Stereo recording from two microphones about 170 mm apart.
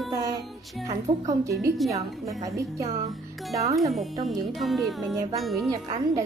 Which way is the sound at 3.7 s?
Centre (ahead or behind).